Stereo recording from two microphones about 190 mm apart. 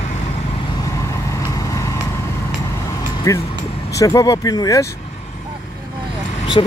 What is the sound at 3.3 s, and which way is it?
Speech, 15° left (ahead or behind).